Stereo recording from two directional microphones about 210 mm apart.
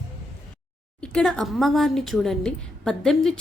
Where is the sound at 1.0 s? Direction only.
5° left (ahead or behind).